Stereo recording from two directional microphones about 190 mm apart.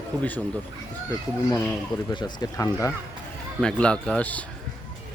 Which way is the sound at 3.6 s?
5° left (ahead or behind).